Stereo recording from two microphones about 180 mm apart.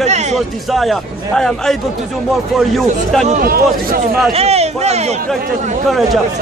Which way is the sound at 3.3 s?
50° right (ahead or behind).